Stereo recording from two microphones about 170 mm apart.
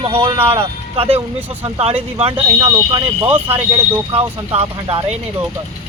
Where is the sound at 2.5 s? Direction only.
25° right (ahead or behind).